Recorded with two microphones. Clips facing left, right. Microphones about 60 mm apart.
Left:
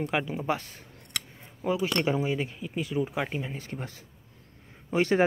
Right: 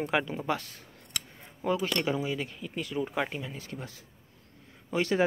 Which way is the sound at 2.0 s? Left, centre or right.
Left.